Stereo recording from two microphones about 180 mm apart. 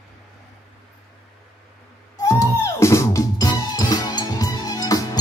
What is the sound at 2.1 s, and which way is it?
Music, 20° left (ahead or behind).